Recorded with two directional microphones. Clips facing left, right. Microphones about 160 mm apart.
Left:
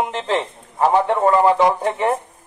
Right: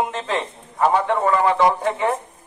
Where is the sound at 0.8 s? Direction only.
30° left (ahead or behind).